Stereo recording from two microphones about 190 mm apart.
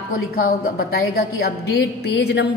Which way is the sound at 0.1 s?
50° left (ahead or behind).